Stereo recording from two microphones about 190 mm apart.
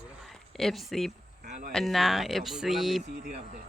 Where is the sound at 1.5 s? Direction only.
40° right (ahead or behind).